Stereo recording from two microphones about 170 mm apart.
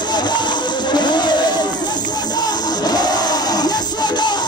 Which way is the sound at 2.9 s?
25° left (ahead or behind).